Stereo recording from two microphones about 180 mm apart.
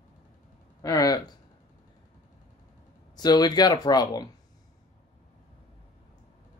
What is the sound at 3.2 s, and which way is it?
Speech, 20° left (ahead or behind).